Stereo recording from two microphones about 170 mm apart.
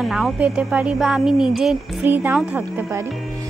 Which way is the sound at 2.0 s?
10° right (ahead or behind).